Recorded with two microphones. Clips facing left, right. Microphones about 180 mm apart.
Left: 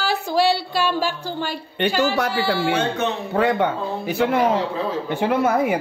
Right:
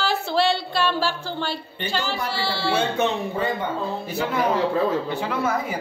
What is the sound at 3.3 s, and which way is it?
Speech, 75° left (ahead or behind).